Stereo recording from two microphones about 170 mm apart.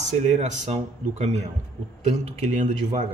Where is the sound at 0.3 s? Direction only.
40° right (ahead or behind).